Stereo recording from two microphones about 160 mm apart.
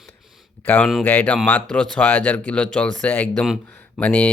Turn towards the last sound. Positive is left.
turn(degrees=10)  # may be behind; listen again after turning